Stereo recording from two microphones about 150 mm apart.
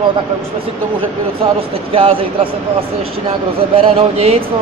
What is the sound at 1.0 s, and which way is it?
Speech, 40° right (ahead or behind).